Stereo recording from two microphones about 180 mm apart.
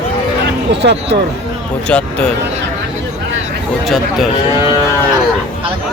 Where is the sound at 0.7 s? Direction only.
70° right (ahead or behind).